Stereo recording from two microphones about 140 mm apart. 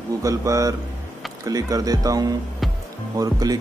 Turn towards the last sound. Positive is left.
turn(degrees=-25)  # may be behind; listen again after turning